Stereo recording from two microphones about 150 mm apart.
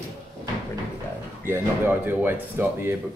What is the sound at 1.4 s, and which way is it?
Speech, 15° right (ahead or behind).